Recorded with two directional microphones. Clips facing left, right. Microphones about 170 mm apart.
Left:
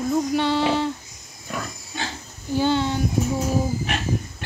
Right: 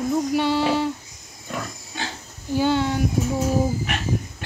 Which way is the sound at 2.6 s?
10° right (ahead or behind).